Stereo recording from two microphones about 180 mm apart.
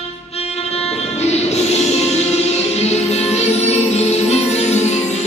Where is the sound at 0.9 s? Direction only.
35° left (ahead or behind).